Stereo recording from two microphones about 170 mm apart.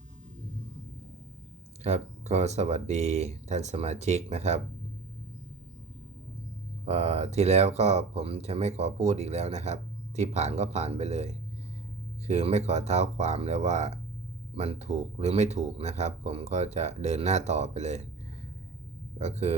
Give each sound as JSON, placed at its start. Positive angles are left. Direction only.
{"t": 1.8, "sound": "speech", "side_deg": -40}
{"t": 6.8, "sound": "speech", "side_deg": -40}
{"t": 19.2, "sound": "speech", "side_deg": -40}